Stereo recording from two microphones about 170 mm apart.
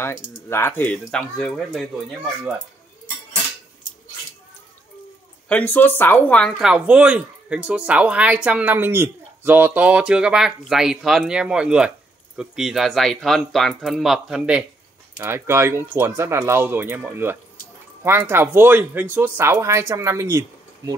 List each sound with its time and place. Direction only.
0.0 s speech: 15° left (ahead or behind)
5.5 s speech: 10° left (ahead or behind)
6.7 s speech: 5° right (ahead or behind)